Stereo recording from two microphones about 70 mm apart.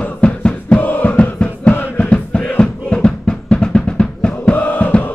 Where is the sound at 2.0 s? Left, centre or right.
Centre.